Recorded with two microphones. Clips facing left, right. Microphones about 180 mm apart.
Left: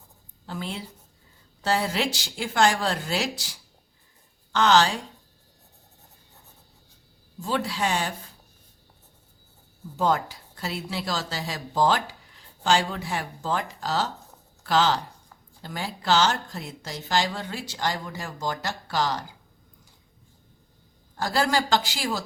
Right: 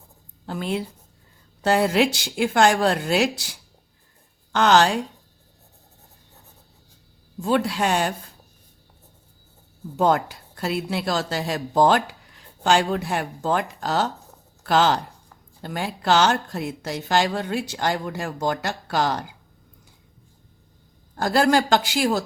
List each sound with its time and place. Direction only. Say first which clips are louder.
0.4 s a woman's voice: right 7 dB; 55° right (ahead or behind)
7.4 s speech: right 5 dB; 55° right (ahead or behind)
10.0 s speech: right 4 dB; 60° right (ahead or behind)
21.2 s speech: right 6 dB; 55° right (ahead or behind)